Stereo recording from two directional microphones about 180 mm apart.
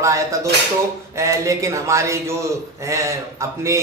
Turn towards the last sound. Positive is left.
turn(degrees=-15)  # may be behind; listen again after turning